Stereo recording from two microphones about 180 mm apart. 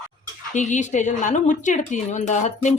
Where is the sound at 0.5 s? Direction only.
40° left (ahead or behind).